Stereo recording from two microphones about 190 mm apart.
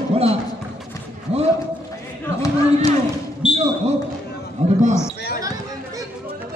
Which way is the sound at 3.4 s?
30° left (ahead or behind).